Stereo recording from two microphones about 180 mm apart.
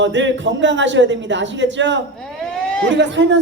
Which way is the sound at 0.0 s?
90° right.